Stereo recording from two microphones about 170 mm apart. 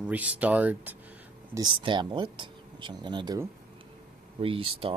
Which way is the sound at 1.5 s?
25° right (ahead or behind).